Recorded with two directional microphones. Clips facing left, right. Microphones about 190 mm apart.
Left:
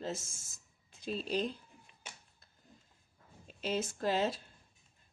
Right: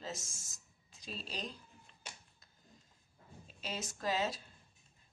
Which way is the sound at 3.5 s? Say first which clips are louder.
Left 8 dB; 55° left (ahead or behind).